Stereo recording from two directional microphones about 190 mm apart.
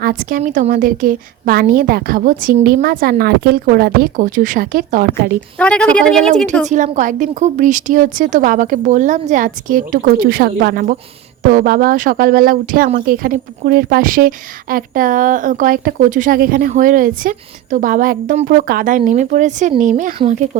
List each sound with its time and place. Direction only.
0.0 s a woman's voice: 50° right (ahead or behind)
5.5 s speech: 5° left (ahead or behind)
6.7 s a woman's voice: 40° right (ahead or behind)